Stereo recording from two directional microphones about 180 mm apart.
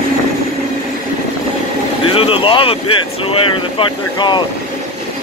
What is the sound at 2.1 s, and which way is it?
Vehicle, 30° left (ahead or behind).